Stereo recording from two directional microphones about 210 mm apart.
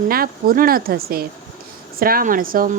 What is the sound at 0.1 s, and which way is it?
A woman's voice, 45° right (ahead or behind).